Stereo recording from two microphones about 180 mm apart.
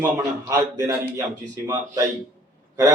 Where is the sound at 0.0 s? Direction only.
15° right (ahead or behind).